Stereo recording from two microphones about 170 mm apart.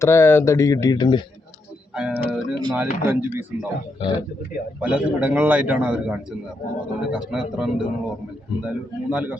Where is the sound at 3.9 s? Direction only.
30° left (ahead or behind).